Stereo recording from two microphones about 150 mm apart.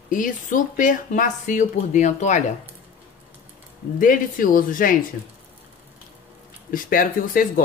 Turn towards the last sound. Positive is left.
turn(degrees=70)  # may be behind; listen again after turning